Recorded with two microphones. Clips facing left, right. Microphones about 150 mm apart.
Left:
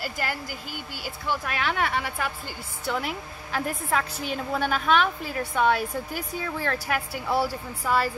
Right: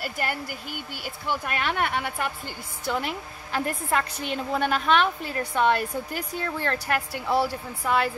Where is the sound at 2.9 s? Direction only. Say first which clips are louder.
Right 1 dB; centre (ahead or behind).